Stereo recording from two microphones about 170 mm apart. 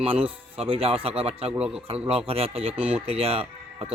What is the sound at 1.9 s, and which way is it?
Speech, 35° right (ahead or behind).